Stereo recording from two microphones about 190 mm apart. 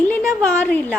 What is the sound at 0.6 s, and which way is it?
Speech, 10° left (ahead or behind).